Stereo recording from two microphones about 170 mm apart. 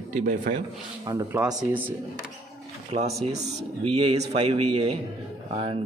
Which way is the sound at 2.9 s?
40° right (ahead or behind).